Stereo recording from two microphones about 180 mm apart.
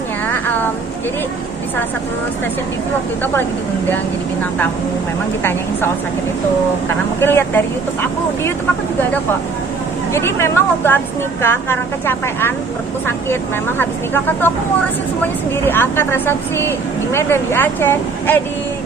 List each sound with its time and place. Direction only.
0.3 s a sound: 10° left (ahead or behind)
5.4 s speech: 10° left (ahead or behind)
7.2 s speech: 10° left (ahead or behind)
10.1 s speech: 15° left (ahead or behind)